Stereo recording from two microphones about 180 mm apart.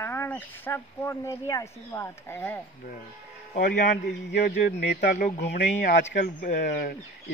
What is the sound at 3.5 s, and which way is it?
Speech, 50° left (ahead or behind).